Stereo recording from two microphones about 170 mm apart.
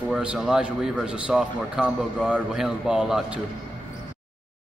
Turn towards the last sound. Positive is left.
turn(degrees=-5)  # may be behind; listen again after turning